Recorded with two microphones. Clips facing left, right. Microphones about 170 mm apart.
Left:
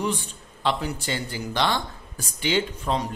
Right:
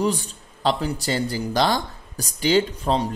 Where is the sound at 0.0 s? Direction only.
35° right (ahead or behind).